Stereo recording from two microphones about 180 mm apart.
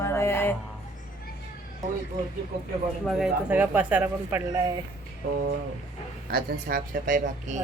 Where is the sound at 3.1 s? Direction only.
5° right (ahead or behind).